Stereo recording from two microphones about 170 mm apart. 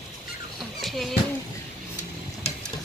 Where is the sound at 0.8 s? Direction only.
Centre (ahead or behind).